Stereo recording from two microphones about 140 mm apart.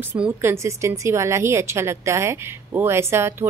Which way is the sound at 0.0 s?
15° right (ahead or behind).